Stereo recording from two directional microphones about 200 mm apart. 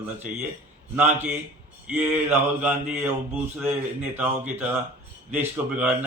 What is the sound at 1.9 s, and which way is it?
Speech, 10° right (ahead or behind).